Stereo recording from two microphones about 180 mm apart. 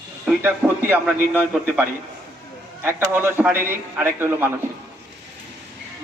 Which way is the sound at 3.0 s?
10° right (ahead or behind).